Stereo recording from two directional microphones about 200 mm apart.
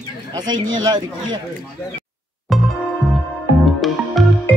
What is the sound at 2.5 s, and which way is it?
Music, centre (ahead or behind).